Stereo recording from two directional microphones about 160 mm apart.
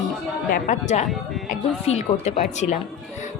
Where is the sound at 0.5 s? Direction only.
50° left (ahead or behind).